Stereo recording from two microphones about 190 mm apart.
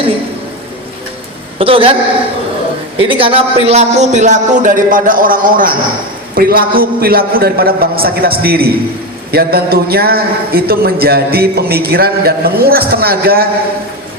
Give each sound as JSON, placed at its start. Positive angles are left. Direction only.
{"t": 1.5, "sound": "a woman's voice", "side_deg": -30}
{"t": 3.0, "sound": "a man's voice", "side_deg": -30}